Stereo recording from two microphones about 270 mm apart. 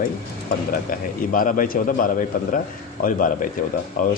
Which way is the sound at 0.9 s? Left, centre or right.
Left.